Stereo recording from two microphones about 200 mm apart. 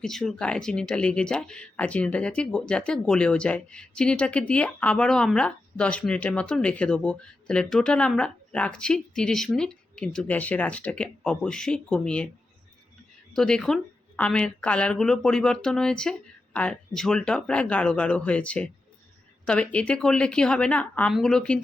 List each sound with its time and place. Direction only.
0.0 s speech: centre (ahead or behind)
13.3 s speech: 5° left (ahead or behind)